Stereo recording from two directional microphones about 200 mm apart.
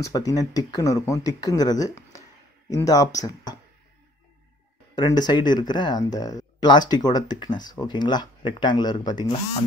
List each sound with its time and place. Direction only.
0.0 s speech: 15° left (ahead or behind)
4.9 s speech: 20° left (ahead or behind)